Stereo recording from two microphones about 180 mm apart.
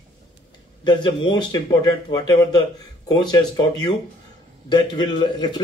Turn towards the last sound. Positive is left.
turn(degrees=25)  # may be behind; listen again after turning